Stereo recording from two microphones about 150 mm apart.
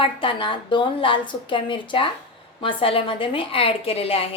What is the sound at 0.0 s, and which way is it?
A woman's voice, 35° left (ahead or behind).